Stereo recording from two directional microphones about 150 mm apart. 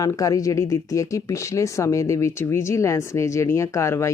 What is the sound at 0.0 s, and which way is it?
Speech, 25° left (ahead or behind).